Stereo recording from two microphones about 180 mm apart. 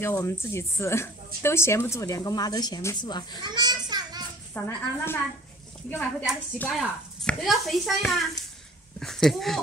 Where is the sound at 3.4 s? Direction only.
25° right (ahead or behind).